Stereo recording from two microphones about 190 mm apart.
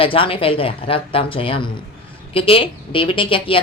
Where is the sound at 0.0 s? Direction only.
30° left (ahead or behind).